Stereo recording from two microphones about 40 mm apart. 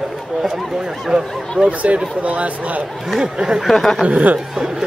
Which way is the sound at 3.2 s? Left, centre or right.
Right.